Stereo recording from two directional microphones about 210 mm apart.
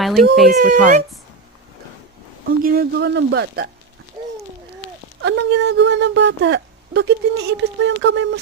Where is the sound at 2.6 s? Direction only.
45° right (ahead or behind).